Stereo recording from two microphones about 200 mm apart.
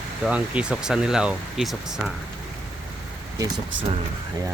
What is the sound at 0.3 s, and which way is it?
Speech, 5° right (ahead or behind).